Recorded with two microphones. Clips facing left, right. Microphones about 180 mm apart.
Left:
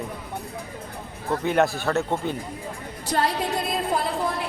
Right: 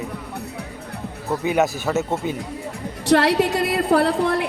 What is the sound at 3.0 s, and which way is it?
A woman's voice, 75° right (ahead or behind).